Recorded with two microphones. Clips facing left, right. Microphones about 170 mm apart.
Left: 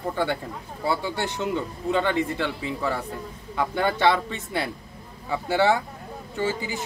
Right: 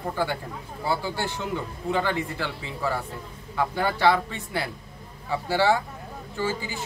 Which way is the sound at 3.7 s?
20° left (ahead or behind).